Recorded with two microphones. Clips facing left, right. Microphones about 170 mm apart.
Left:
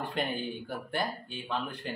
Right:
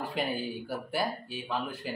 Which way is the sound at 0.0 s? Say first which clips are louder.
Right 1 dB; 5° right (ahead or behind).